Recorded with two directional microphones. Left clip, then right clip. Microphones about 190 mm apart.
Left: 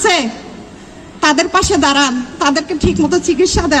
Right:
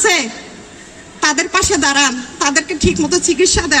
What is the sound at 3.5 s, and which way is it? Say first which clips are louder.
Speech: left 1 dB; 30° right (ahead or behind).